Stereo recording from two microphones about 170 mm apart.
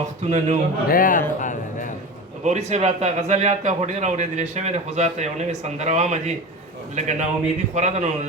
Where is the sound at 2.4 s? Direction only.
40° right (ahead or behind).